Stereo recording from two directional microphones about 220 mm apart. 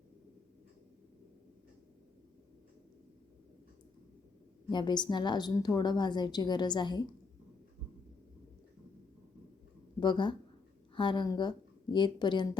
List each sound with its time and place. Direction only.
4.7 s a woman's voice: 20° left (ahead or behind)
10.0 s a woman's voice: 20° left (ahead or behind)